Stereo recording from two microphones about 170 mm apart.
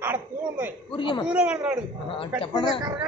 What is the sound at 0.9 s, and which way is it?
Speech, 30° left (ahead or behind).